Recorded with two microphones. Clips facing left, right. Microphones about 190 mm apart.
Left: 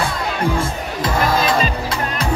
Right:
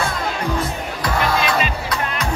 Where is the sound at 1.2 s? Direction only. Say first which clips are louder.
Left 2 dB; 45° left (ahead or behind).